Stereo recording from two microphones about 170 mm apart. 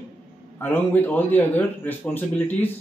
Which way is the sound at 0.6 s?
10° left (ahead or behind).